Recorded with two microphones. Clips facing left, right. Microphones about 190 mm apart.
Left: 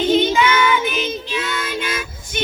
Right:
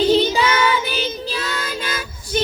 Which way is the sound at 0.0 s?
35° right (ahead or behind).